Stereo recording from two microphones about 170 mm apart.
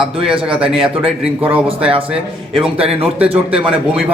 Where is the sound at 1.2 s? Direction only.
5° right (ahead or behind).